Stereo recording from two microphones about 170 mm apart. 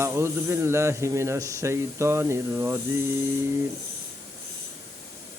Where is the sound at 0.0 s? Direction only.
15° right (ahead or behind).